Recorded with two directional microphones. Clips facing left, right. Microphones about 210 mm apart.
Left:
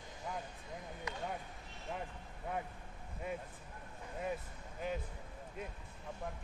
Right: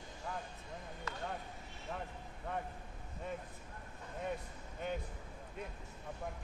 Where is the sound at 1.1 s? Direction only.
15° left (ahead or behind).